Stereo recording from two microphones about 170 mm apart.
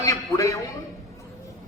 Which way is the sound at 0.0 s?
20° left (ahead or behind).